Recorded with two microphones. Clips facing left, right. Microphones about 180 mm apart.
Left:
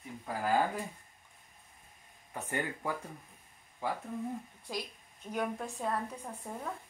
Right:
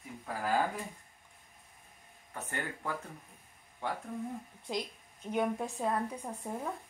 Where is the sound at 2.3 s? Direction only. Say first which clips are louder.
Left 3 dB; 15° left (ahead or behind).